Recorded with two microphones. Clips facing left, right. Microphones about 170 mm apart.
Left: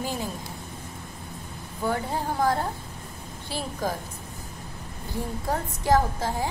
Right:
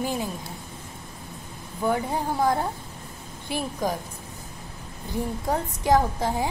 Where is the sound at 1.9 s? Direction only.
15° right (ahead or behind).